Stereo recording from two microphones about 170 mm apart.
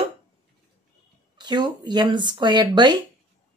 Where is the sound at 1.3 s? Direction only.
25° right (ahead or behind).